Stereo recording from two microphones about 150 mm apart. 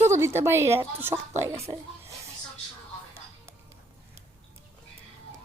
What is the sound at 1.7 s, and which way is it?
Speech, 40° right (ahead or behind).